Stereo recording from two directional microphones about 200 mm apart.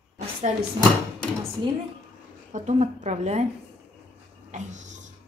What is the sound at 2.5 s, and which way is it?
Speech, 35° right (ahead or behind).